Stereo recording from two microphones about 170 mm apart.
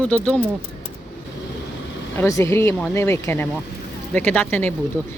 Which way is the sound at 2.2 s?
15° left (ahead or behind).